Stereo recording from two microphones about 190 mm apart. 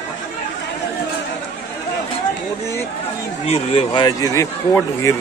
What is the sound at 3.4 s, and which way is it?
Speech, 30° left (ahead or behind).